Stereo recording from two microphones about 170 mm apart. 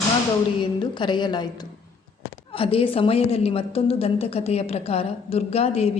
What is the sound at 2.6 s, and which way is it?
A woman's voice, 35° left (ahead or behind).